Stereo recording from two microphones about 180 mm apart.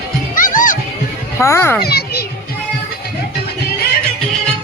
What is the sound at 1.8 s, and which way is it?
Children playing, 60° left (ahead or behind).